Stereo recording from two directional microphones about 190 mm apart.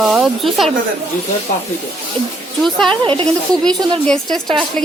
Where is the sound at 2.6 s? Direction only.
5° left (ahead or behind).